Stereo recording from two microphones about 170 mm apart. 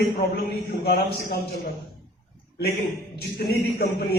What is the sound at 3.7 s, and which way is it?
Speech, 65° left (ahead or behind).